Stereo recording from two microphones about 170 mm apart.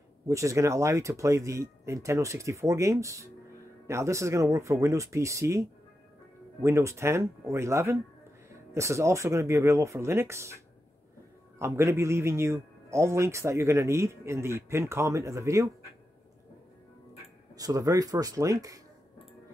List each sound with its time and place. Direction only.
0.3 s a man's voice: 20° right (ahead or behind)
11.5 s a man's voice: 15° right (ahead or behind)
17.6 s speech: 20° right (ahead or behind)